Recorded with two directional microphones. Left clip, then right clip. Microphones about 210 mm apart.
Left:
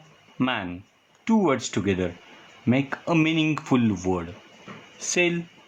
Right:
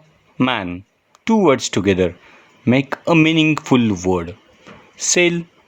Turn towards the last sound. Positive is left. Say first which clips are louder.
# right 8 dB
turn(degrees=-50)  # may be behind; listen again after turning